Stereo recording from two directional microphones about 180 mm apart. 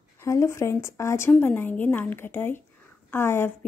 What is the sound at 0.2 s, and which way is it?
A woman's voice, 15° left (ahead or behind).